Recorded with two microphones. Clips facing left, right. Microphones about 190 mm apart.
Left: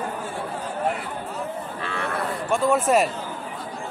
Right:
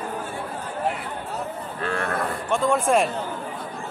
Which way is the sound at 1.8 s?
45° right (ahead or behind).